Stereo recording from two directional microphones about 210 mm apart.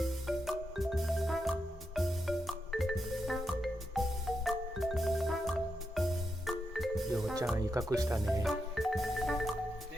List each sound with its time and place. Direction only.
0.0 s music: centre (ahead or behind)
7.5 s speech: 15° right (ahead or behind)
8.4 s music: centre (ahead or behind)